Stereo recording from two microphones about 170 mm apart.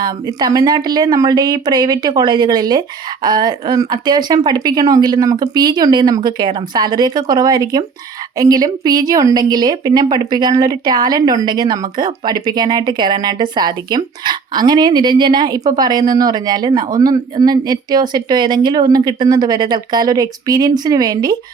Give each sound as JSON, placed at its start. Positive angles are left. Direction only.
{"t": 0.0, "sound": "a woman's voice", "side_deg": -25}